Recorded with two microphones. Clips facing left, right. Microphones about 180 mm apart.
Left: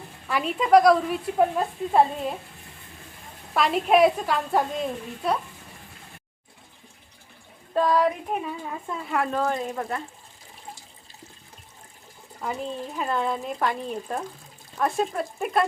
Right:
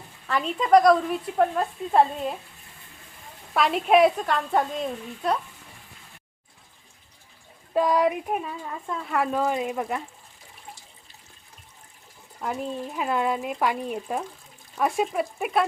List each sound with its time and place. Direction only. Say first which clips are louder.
0.3 s a woman's voice: even; 5° left (ahead or behind)
3.5 s a woman's voice: right 1 dB; centre (ahead or behind)
7.7 s speech: even; 15° right (ahead or behind)
8.9 s speech: right 1 dB; 5° left (ahead or behind); by 10.0 s 10° right (ahead or behind)
12.4 s speech: right 1 dB; 5° right (ahead or behind)